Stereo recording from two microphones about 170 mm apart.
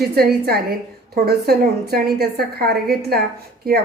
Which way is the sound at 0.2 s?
65° right (ahead or behind).